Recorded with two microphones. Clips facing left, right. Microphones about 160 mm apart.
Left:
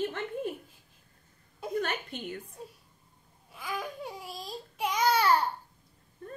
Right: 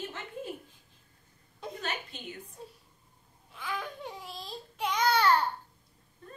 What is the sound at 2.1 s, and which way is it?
Speech, 55° left (ahead or behind).